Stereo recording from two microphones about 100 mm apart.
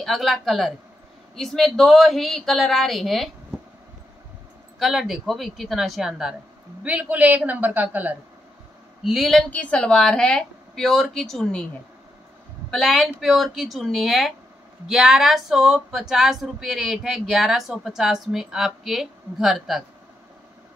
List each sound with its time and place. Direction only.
0.0 s speech: centre (ahead or behind)
4.7 s speech: centre (ahead or behind)
6.8 s a man's voice: 15° right (ahead or behind)
9.0 s speech: centre (ahead or behind)
9.5 s a woman's voice: 15° left (ahead or behind)
12.7 s speech: centre (ahead or behind)